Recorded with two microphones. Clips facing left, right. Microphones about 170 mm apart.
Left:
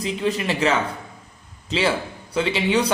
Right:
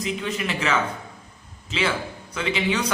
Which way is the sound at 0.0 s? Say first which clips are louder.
Left 4 dB; 35° left (ahead or behind).